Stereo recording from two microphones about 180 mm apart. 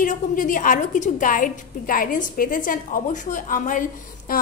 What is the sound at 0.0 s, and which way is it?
A woman's voice, 45° left (ahead or behind).